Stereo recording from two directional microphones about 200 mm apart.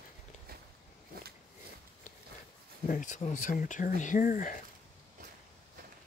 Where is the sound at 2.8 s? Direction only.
40° left (ahead or behind).